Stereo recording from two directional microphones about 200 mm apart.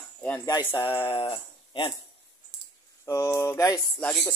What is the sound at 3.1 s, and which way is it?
Speech, 15° left (ahead or behind).